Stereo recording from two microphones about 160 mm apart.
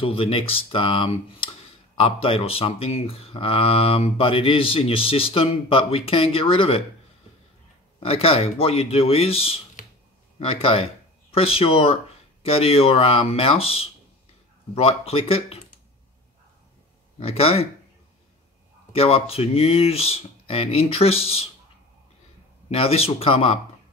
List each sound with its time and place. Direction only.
0.0 s speech: 35° left (ahead or behind)
8.0 s speech: 35° left (ahead or behind)
9.8 s a sound: 55° left (ahead or behind)
10.4 s speech: 35° left (ahead or behind)
17.2 s speech: 35° left (ahead or behind)
18.9 s speech: 35° left (ahead or behind)
22.7 s speech: 40° left (ahead or behind)